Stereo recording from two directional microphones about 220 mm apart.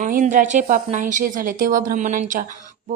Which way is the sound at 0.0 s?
35° right (ahead or behind).